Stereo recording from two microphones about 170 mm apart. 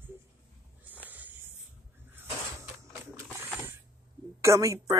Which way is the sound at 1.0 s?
10° right (ahead or behind).